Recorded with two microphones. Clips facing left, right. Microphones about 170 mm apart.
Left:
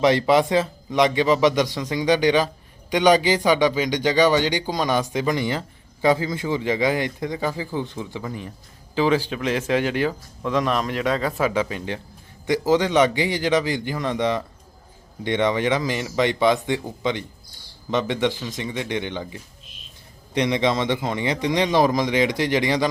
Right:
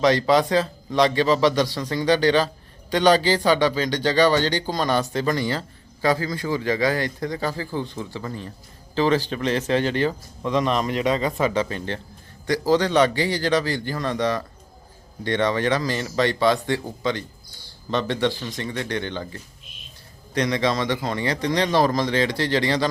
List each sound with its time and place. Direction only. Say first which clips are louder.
0.0 s a man's voice: left 1 dB; 20° left (ahead or behind)